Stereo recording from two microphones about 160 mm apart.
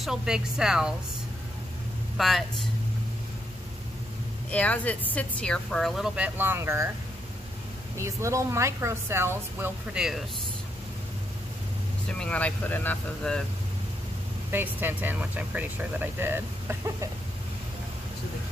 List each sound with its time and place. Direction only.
0.0 s speech: 5° right (ahead or behind)
2.1 s speech: centre (ahead or behind)
4.5 s speech: 10° left (ahead or behind); by 6.9 s 15° right (ahead or behind)
8.0 s speech: 20° right (ahead or behind)
9.9 s speech: 5° right (ahead or behind)
12.1 s speech: 5° left (ahead or behind)
14.5 s speech: 10° right (ahead or behind)